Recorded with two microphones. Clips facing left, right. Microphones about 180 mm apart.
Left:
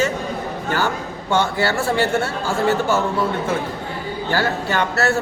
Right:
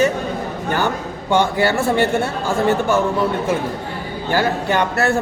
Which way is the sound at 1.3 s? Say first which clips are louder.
Right 3 dB; 15° right (ahead or behind).